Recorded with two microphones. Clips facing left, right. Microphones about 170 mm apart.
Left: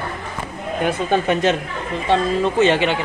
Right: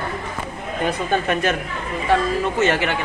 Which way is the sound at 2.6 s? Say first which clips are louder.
Left 4 dB; 20° left (ahead or behind).